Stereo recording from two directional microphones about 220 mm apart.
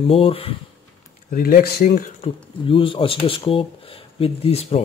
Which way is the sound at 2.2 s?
25° left (ahead or behind).